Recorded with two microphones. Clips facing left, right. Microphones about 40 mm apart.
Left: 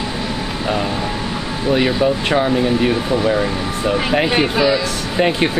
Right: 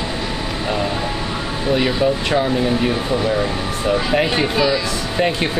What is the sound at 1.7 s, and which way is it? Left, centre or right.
Speech, centre.